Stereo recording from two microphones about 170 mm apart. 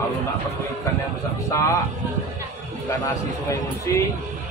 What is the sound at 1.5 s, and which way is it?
Speech, 20° left (ahead or behind).